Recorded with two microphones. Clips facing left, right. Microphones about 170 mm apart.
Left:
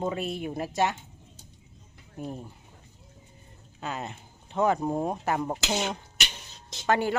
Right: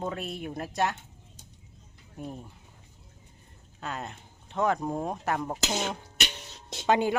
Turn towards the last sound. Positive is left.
turn(degrees=-15)  # may be behind; listen again after turning